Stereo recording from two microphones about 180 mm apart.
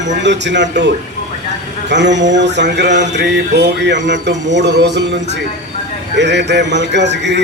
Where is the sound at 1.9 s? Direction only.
75° right (ahead or behind).